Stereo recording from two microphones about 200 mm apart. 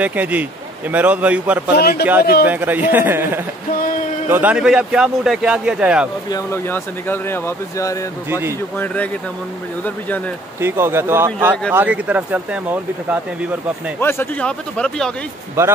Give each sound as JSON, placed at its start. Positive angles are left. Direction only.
{"t": 0.0, "sound": "speech", "side_deg": -10}
{"t": 1.8, "sound": "speech", "side_deg": 50}
{"t": 2.4, "sound": "speech", "side_deg": -10}
{"t": 6.3, "sound": "speech", "side_deg": 10}
{"t": 8.3, "sound": "speech", "side_deg": -10}
{"t": 8.7, "sound": "speech", "side_deg": 10}
{"t": 10.6, "sound": "speech", "side_deg": -10}
{"t": 13.9, "sound": "speech", "side_deg": 10}
{"t": 15.6, "sound": "speech", "side_deg": -10}